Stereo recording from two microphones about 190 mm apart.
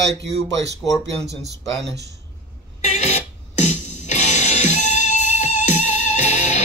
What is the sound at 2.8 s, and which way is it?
Music, 35° left (ahead or behind).